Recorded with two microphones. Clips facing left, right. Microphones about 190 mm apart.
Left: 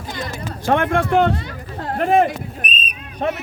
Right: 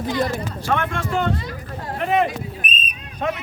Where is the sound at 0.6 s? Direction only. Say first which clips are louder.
Left 8 dB; 55° left (ahead or behind).